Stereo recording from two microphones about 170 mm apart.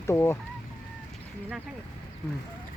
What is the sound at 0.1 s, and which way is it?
Speech, 15° left (ahead or behind).